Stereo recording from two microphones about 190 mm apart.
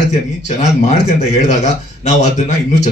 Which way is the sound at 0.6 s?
35° left (ahead or behind).